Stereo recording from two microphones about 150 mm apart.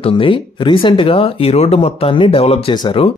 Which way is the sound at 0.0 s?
35° left (ahead or behind).